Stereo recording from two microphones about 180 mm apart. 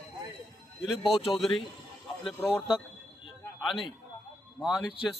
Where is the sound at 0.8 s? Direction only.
Centre (ahead or behind).